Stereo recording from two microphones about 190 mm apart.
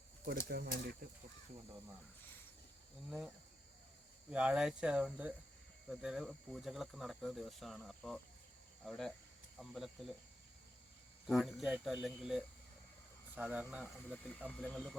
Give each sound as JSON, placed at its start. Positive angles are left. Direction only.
{"t": 0.5, "sound": "speech", "side_deg": -55}
{"t": 3.1, "sound": "speech", "side_deg": -5}
{"t": 11.3, "sound": "speech", "side_deg": 0}
{"t": 14.7, "sound": "speech", "side_deg": 5}